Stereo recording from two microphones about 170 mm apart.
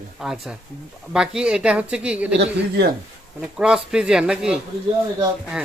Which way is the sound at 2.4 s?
75° right (ahead or behind).